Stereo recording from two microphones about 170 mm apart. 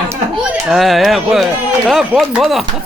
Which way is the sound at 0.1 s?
15° right (ahead or behind).